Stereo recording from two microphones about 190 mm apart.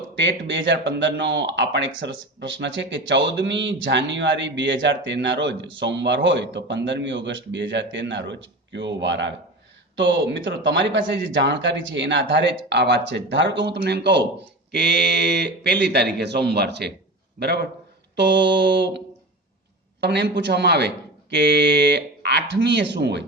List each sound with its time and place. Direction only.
0.2 s speech: 70° right (ahead or behind)